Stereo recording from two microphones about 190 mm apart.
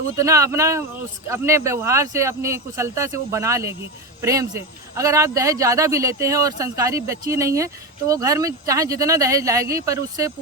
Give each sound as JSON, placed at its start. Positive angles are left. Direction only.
{"t": 0.2, "sound": "speech", "side_deg": -15}